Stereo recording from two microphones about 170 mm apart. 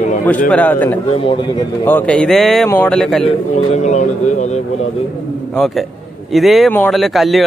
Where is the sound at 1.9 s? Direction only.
10° left (ahead or behind).